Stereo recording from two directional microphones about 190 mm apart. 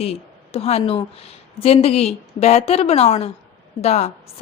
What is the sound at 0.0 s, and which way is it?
A woman's voice, 30° left (ahead or behind).